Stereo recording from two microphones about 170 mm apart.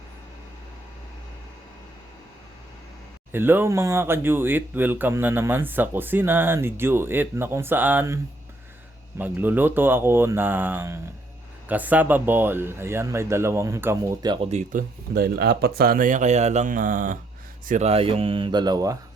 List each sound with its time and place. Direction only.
3.3 s speech: 10° right (ahead or behind)
14.5 s speech: 50° right (ahead or behind)
17.7 s speech: 40° right (ahead or behind); by 18.9 s 20° right (ahead or behind)